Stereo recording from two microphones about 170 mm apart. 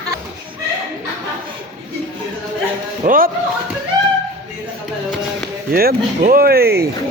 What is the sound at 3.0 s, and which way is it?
Speech, 55° right (ahead or behind).